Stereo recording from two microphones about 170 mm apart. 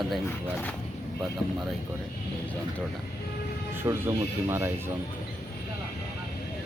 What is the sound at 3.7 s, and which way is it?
Speech, 15° right (ahead or behind).